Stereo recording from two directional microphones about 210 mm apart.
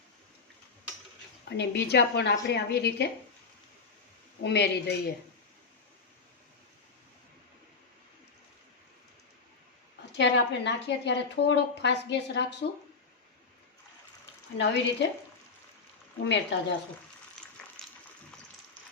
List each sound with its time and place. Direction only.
1.5 s a woman's voice: 55° left (ahead or behind)
4.4 s a woman's voice: 55° left (ahead or behind)
10.1 s a woman's voice: 55° left (ahead or behind)
14.6 s a woman's voice: 50° left (ahead or behind)
16.2 s a woman's voice: 55° left (ahead or behind)